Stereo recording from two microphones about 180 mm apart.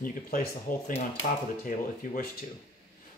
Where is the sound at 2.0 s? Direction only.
50° left (ahead or behind).